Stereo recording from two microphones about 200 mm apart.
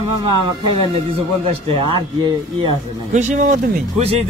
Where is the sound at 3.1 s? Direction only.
40° right (ahead or behind).